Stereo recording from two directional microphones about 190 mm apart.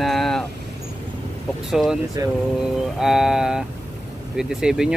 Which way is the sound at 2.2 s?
20° right (ahead or behind).